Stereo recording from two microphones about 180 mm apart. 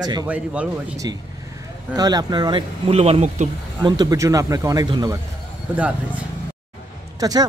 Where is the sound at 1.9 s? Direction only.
20° right (ahead or behind); by 3.5 s 35° right (ahead or behind).